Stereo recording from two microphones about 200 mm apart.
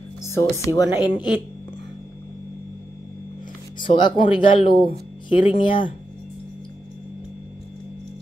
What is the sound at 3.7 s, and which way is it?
Speech, 25° left (ahead or behind).